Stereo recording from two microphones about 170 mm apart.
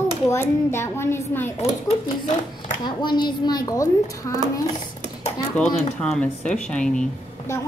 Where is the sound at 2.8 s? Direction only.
25° left (ahead or behind).